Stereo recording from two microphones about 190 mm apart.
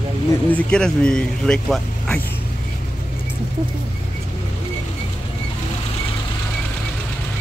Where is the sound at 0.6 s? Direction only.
5° left (ahead or behind).